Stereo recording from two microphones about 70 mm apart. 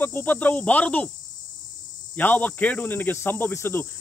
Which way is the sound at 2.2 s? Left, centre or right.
Left.